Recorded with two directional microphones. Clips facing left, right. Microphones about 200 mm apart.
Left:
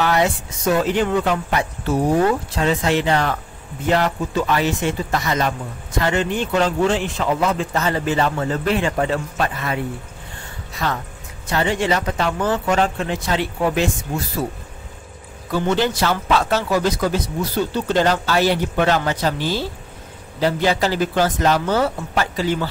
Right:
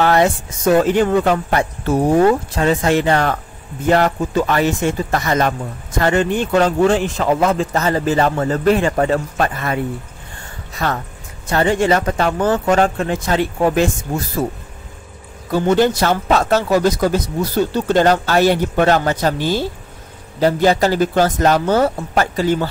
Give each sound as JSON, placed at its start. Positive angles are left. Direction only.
{"t": 0.0, "sound": "speech", "side_deg": -50}
{"t": 15.5, "sound": "speech", "side_deg": -45}